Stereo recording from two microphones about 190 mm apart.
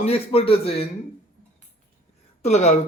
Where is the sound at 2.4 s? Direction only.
35° left (ahead or behind).